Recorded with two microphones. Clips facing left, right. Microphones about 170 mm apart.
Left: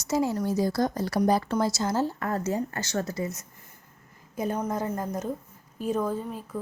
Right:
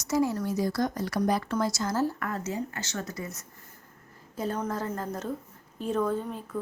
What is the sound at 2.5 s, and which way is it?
A woman's voice, 45° left (ahead or behind).